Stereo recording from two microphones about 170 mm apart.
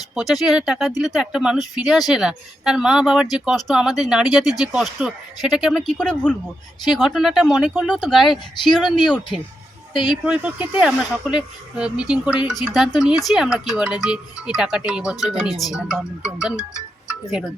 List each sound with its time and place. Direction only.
0.1 s speech: centre (ahead or behind)
9.9 s speech: 25° left (ahead or behind)
10.4 s speech: 5° right (ahead or behind)